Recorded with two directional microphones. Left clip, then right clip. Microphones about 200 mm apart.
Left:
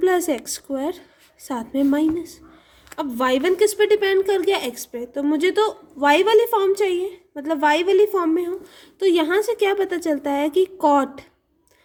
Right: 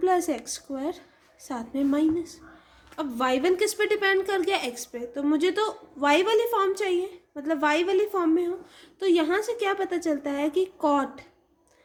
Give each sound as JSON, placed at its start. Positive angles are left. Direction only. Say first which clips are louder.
{"t": 0.0, "sound": "a woman's voice", "louder": "left 5 dB", "side_deg": 45}